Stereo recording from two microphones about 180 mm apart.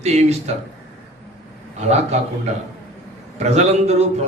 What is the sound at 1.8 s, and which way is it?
Speech, 40° right (ahead or behind).